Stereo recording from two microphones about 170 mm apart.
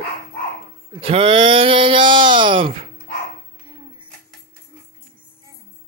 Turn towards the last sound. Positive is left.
turn(degrees=-30)  # may be behind; listen again after turning